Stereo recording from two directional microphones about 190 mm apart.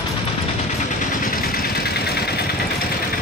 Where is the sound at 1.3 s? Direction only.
50° left (ahead or behind).